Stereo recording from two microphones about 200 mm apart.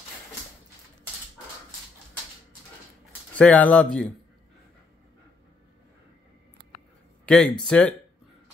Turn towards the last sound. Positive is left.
turn(degrees=5)  # may be behind; listen again after turning